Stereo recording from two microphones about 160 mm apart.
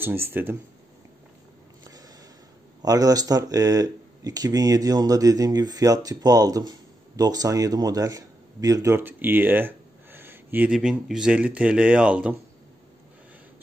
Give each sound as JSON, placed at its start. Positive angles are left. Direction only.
{"t": 0.0, "sound": "speech", "side_deg": -15}
{"t": 2.8, "sound": "speech", "side_deg": -20}